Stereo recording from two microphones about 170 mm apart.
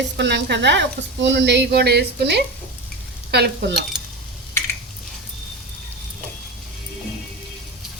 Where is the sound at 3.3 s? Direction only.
75° right (ahead or behind).